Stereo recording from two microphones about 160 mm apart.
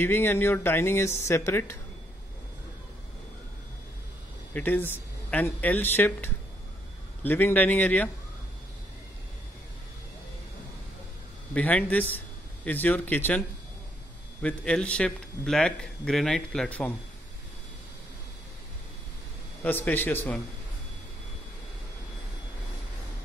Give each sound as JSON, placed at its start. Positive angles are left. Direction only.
{"t": 0.0, "sound": "speech", "side_deg": 15}
{"t": 4.6, "sound": "speech", "side_deg": 10}
{"t": 11.5, "sound": "speech", "side_deg": 10}
{"t": 14.4, "sound": "speech", "side_deg": 5}
{"t": 19.6, "sound": "speech", "side_deg": 10}